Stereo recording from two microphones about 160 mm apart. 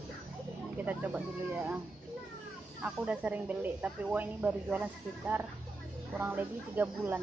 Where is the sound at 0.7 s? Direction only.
10° right (ahead or behind).